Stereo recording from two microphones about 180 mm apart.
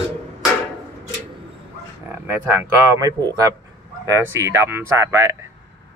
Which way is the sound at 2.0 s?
10° right (ahead or behind).